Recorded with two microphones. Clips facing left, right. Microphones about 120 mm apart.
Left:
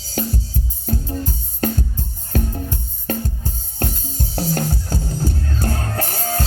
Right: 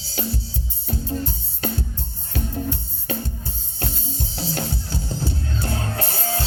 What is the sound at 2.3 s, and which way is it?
Music, 45° left (ahead or behind).